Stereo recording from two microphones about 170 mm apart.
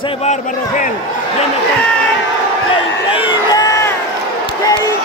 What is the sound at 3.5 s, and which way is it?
Crowd, 20° left (ahead or behind).